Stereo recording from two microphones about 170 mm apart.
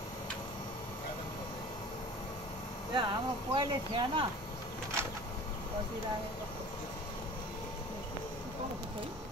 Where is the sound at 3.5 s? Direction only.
30° right (ahead or behind).